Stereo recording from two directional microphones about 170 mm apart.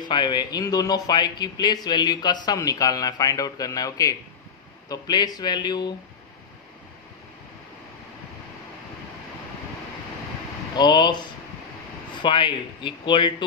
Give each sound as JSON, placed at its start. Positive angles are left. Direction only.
{"t": 0.0, "sound": "a man's voice", "side_deg": 25}
{"t": 10.8, "sound": "a man's voice", "side_deg": 25}